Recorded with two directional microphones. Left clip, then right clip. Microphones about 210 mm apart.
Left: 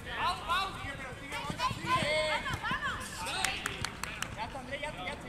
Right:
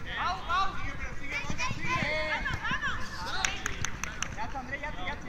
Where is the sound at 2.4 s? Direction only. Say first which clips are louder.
Right 2 dB; 30° left (ahead or behind).